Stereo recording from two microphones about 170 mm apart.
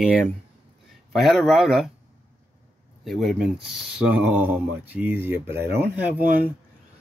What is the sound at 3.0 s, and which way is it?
Speech, centre (ahead or behind).